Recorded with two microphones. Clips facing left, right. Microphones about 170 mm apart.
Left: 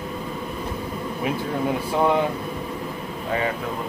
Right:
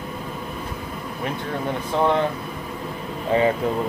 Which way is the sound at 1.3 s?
5° left (ahead or behind).